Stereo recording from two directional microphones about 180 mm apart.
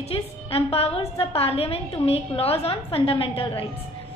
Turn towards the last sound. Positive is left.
turn(degrees=30)  # may be behind; listen again after turning